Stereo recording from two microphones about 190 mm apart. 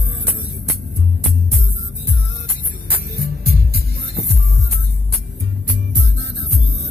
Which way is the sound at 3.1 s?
55° right (ahead or behind).